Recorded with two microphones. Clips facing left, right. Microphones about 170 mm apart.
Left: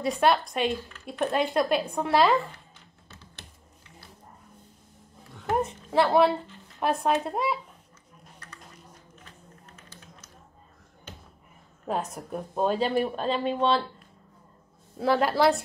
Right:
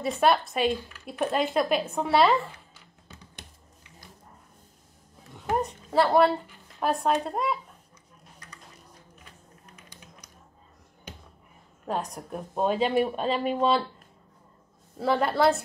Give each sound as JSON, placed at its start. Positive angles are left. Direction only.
{"t": 0.0, "sound": "a woman's voice", "side_deg": 0}
{"t": 3.1, "sound": "computer keyboard", "side_deg": -15}
{"t": 5.6, "sound": "a woman's voice", "side_deg": 0}
{"t": 9.8, "sound": "a sound", "side_deg": -15}
{"t": 11.8, "sound": "a woman's voice", "side_deg": 0}
{"t": 15.0, "sound": "a woman's voice", "side_deg": 0}